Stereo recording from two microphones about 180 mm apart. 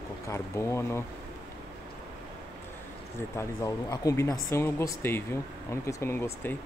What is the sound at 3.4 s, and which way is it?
Speech, 20° left (ahead or behind).